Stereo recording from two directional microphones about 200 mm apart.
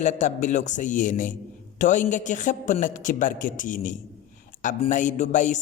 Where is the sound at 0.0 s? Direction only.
35° left (ahead or behind).